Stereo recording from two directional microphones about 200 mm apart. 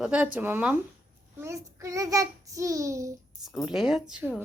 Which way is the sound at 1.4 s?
15° right (ahead or behind).